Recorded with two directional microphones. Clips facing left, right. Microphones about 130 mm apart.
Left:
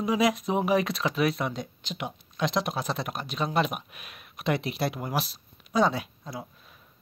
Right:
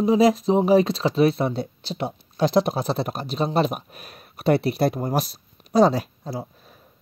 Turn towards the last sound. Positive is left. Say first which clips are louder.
# right 7 dB
turn(degrees=-35)  # may be behind; listen again after turning